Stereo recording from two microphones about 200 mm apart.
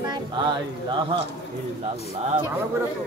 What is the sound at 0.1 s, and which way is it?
Speech, 20° right (ahead or behind).